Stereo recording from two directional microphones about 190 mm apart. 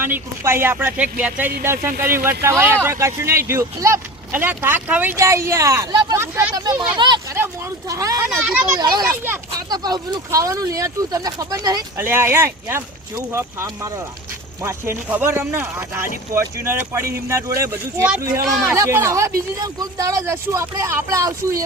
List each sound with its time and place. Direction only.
0.0 s speech: 10° right (ahead or behind)
8.4 s speech: 5° right (ahead or behind)
8.8 s speech: 20° right (ahead or behind)
9.0 s speech: 10° right (ahead or behind)
9.6 s speech: 20° right (ahead or behind)